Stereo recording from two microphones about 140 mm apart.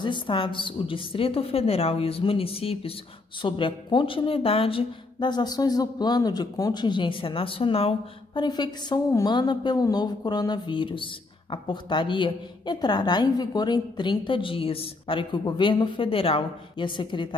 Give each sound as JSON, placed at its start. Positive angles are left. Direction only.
{"t": 0.0, "sound": "a woman's voice", "side_deg": 35}
{"t": 8.4, "sound": "a woman's voice", "side_deg": 30}